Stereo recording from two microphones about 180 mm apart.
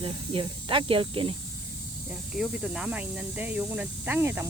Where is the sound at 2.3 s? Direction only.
5° right (ahead or behind).